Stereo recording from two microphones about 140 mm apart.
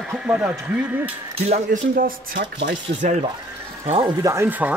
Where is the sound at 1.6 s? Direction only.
85° right.